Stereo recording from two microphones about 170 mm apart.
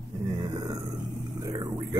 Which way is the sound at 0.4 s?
25° right (ahead or behind).